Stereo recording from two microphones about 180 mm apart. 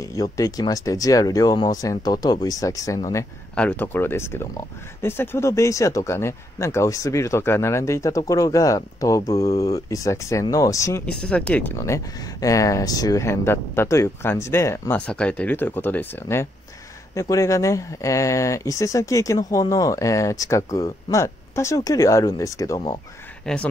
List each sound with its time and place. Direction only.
0.0 s speech: 20° left (ahead or behind)
11.1 s speech: 5° left (ahead or behind)
23.4 s speech: 5° left (ahead or behind)